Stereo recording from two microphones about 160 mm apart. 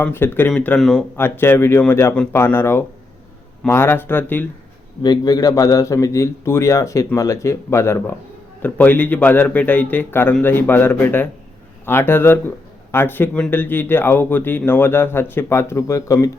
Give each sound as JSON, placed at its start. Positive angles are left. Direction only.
{"t": 0.0, "sound": "speech", "side_deg": 15}
{"t": 1.1, "sound": "speech", "side_deg": 15}
{"t": 5.0, "sound": "a man's voice", "side_deg": 25}